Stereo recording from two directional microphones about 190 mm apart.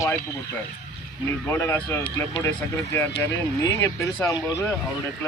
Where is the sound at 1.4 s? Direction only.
10° left (ahead or behind).